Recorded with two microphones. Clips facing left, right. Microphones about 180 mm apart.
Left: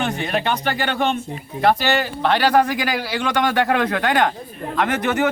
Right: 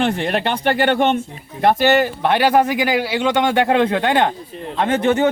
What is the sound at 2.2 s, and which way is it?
Speech, 20° right (ahead or behind).